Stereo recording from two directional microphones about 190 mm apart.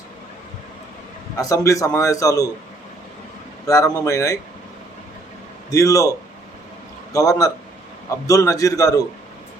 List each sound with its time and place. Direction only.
1.4 s a man's voice: 15° left (ahead or behind)
3.7 s a man's voice: 20° left (ahead or behind)
5.7 s a man's voice: 15° left (ahead or behind)
7.1 s a man's voice: 20° left (ahead or behind)